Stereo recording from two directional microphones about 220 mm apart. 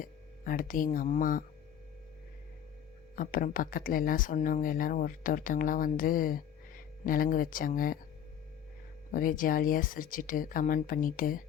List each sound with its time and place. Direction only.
0.0 s speech: 40° left (ahead or behind)
3.2 s speech: 40° left (ahead or behind)
9.1 s speech: 40° left (ahead or behind)